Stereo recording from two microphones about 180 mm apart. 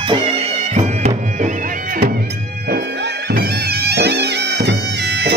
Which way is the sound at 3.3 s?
60° right (ahead or behind).